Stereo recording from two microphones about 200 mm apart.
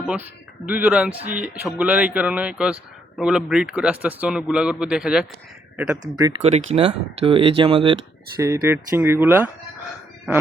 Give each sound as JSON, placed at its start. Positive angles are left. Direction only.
{"t": 0.6, "sound": "a man's voice", "side_deg": -5}
{"t": 6.0, "sound": "speech", "side_deg": -20}
{"t": 8.4, "sound": "speech", "side_deg": -15}